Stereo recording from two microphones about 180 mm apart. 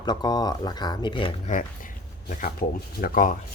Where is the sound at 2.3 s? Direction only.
50° left (ahead or behind).